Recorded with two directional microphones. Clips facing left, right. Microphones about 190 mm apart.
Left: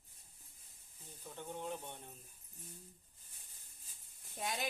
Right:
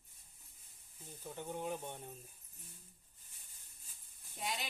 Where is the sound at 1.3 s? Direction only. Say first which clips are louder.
Right 3 dB; 10° right (ahead or behind).